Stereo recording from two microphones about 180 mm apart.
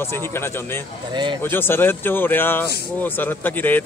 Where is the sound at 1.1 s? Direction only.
25° right (ahead or behind).